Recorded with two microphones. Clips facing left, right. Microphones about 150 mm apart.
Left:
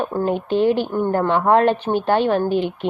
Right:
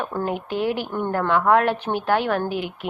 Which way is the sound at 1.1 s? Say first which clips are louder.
Left 2 dB; 25° left (ahead or behind).